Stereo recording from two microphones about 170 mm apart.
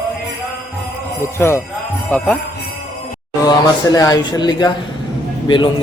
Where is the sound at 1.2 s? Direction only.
15° left (ahead or behind).